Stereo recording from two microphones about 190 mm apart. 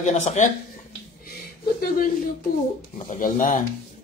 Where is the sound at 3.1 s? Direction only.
45° left (ahead or behind).